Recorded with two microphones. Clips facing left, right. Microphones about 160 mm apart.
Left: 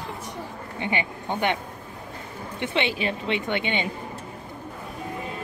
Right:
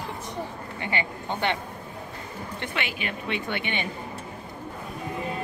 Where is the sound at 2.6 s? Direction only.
25° left (ahead or behind).